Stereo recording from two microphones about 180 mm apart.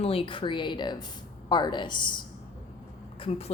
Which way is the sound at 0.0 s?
30° left (ahead or behind).